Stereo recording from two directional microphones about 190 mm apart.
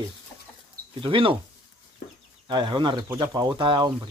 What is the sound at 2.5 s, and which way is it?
Speech, 25° right (ahead or behind).